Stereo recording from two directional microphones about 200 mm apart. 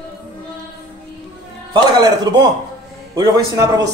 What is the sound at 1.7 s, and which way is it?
Speech, 20° right (ahead or behind).